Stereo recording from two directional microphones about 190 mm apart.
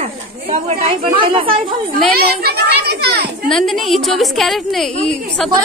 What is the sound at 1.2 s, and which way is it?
Speech, 25° right (ahead or behind).